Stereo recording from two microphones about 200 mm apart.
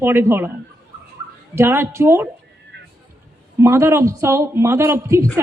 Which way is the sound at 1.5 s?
15° right (ahead or behind).